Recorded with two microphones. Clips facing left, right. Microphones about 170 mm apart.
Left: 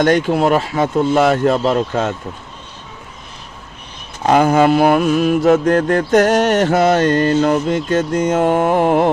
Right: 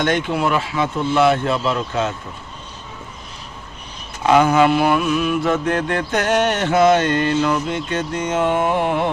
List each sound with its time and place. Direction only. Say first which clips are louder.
0.0 s mantra: left 6 dB; 40° left (ahead or behind)
4.2 s mantra: left 2 dB; 45° left (ahead or behind)